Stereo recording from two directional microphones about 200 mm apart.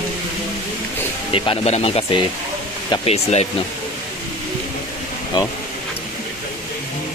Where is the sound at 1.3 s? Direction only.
30° left (ahead or behind).